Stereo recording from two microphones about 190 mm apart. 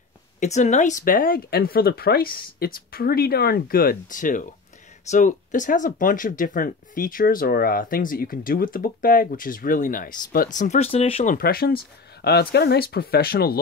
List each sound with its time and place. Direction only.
0.4 s speech: 40° left (ahead or behind)
11.3 s speech: 55° left (ahead or behind)